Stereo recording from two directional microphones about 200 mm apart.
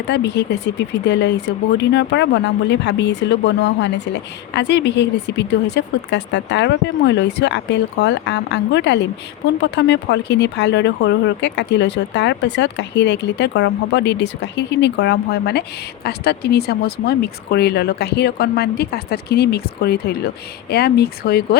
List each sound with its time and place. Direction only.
0.1 s speech: 60° left (ahead or behind)